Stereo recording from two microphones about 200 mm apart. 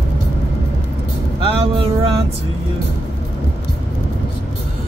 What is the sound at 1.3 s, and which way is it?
Vehicle, 30° right (ahead or behind).